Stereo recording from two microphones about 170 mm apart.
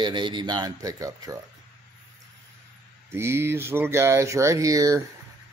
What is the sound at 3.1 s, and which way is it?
Speech, 15° right (ahead or behind).